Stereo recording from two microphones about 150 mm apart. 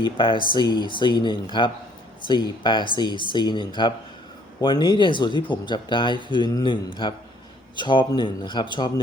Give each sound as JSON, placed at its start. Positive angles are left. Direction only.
{"t": 0.0, "sound": "speech", "side_deg": 35}